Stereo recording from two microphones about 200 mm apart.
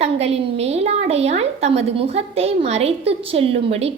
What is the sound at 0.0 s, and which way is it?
A woman's voice, 30° right (ahead or behind).